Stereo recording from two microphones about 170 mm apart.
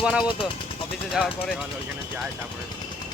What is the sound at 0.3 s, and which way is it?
Speech, 30° left (ahead or behind).